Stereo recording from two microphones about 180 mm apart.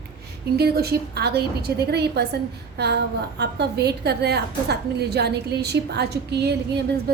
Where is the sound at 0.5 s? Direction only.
60° right (ahead or behind).